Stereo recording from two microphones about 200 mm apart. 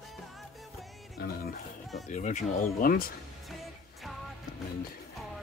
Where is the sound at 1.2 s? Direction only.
50° left (ahead or behind).